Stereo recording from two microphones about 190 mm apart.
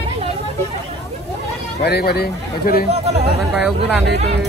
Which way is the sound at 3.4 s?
Centre (ahead or behind).